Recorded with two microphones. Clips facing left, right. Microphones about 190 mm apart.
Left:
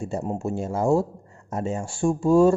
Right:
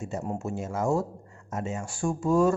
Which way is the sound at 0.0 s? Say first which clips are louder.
Left 4 dB; 30° left (ahead or behind).